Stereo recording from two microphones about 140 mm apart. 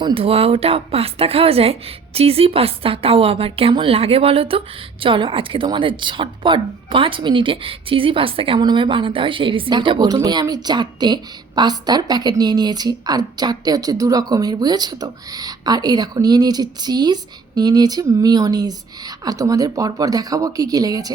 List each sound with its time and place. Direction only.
0.0 s a woman's voice: 40° right (ahead or behind)